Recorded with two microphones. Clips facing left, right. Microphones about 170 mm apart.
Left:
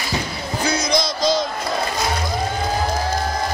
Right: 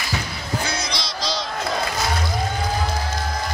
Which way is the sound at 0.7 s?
45° left (ahead or behind).